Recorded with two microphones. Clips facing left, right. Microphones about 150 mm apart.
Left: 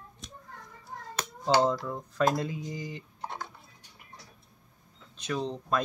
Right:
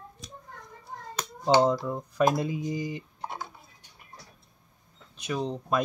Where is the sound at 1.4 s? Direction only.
15° right (ahead or behind).